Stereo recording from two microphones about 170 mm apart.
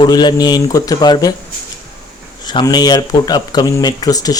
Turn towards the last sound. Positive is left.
turn(degrees=20)  # may be behind; listen again after turning